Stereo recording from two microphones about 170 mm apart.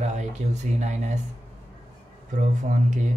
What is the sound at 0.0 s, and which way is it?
Speech, 45° right (ahead or behind).